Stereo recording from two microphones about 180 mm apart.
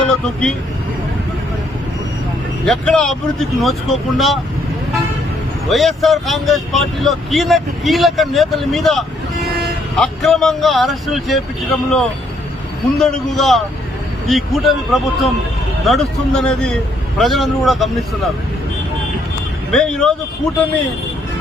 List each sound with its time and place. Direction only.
0.1 s speech: 5° left (ahead or behind)
2.6 s speech: 5° left (ahead or behind)
5.6 s speech: centre (ahead or behind)
19.7 s speech: 5° left (ahead or behind)